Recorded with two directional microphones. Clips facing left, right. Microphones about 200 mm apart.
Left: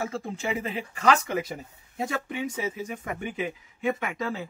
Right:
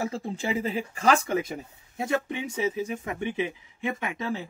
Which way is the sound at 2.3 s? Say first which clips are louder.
Right 2 dB; 25° right (ahead or behind).